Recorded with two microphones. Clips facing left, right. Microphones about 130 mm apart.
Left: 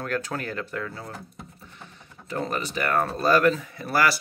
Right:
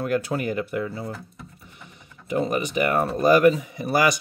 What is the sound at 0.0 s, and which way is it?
Speech, 15° right (ahead or behind).